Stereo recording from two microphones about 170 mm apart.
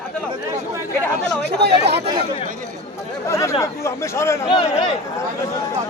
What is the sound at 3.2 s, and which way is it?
Speech, 15° left (ahead or behind).